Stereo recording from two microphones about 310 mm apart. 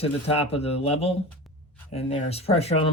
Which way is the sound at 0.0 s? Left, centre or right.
Centre.